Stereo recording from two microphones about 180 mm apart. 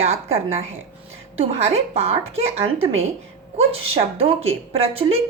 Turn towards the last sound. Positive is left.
turn(degrees=-35)  # may be behind; listen again after turning